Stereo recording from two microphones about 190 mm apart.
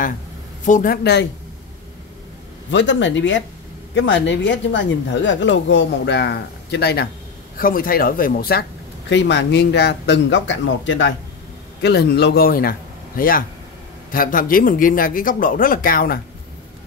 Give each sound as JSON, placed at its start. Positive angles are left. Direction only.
{"t": 0.7, "sound": "speech", "side_deg": 45}
{"t": 2.7, "sound": "speech", "side_deg": 75}
{"t": 9.1, "sound": "speech", "side_deg": 70}
{"t": 11.8, "sound": "a man's voice", "side_deg": 60}